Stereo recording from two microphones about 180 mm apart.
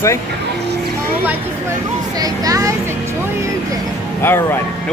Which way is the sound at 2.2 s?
20° right (ahead or behind).